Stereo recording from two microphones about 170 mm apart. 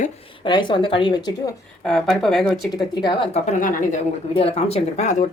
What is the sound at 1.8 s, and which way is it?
Speech, 5° left (ahead or behind).